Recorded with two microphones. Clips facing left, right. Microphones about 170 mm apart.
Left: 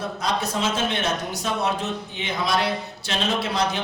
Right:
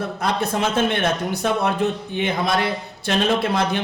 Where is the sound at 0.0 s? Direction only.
55° right (ahead or behind).